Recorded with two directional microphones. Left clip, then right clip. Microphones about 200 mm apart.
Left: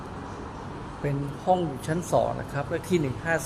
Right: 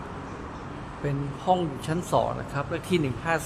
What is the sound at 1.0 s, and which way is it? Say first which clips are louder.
Speech: even; 5° right (ahead or behind).